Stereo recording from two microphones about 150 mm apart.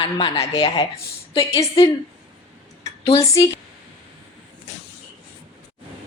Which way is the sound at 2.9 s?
40° left (ahead or behind).